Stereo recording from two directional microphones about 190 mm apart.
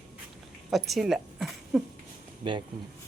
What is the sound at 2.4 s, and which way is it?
Speech, 25° right (ahead or behind).